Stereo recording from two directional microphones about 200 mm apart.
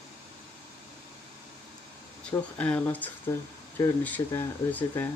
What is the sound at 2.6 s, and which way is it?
Speech, 5° left (ahead or behind).